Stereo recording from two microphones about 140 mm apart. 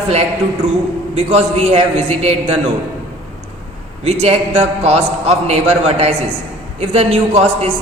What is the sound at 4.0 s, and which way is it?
A man's voice, 50° right (ahead or behind).